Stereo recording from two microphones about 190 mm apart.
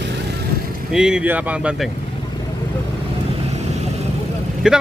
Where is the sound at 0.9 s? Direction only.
5° right (ahead or behind).